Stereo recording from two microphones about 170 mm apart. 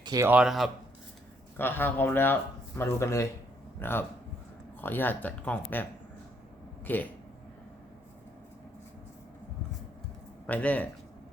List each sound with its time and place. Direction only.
0.0 s speech: 20° right (ahead or behind)
0.3 s speech: 5° right (ahead or behind)
1.5 s speech: 10° left (ahead or behind)
6.8 s speech: 10° left (ahead or behind)
10.4 s speech: 10° left (ahead or behind)